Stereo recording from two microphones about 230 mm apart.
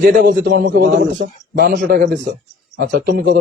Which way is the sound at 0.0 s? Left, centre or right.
Right.